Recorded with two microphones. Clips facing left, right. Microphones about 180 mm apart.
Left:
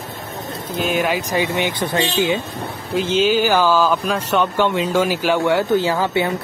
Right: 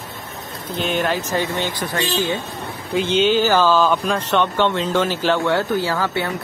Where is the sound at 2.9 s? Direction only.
Centre (ahead or behind).